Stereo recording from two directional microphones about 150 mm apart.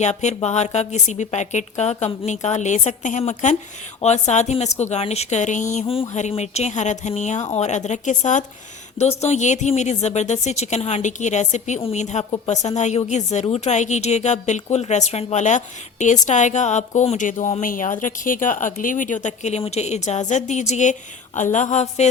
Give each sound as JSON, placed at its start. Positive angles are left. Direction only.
{"t": 0.0, "sound": "a woman's voice", "side_deg": 50}